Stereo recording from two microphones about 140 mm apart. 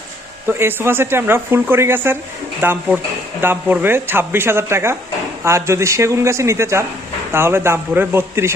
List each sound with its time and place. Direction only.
0.5 s a man's voice: 15° right (ahead or behind)